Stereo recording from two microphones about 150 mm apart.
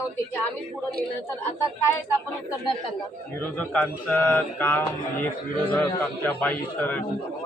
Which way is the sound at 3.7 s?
10° left (ahead or behind).